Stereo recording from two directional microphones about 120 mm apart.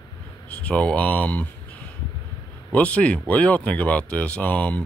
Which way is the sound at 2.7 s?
10° left (ahead or behind).